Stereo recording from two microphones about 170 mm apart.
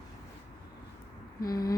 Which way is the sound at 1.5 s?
20° left (ahead or behind).